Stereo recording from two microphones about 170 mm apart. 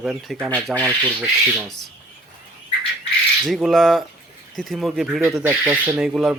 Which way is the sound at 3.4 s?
Centre (ahead or behind).